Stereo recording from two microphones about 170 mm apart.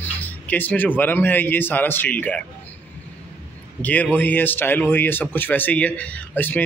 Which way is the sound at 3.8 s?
10° left (ahead or behind).